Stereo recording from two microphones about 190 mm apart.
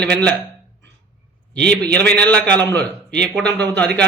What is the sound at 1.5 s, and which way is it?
Speech, 5° left (ahead or behind).